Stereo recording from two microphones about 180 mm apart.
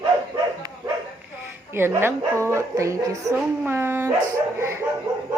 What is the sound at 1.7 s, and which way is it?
Speech, 15° right (ahead or behind).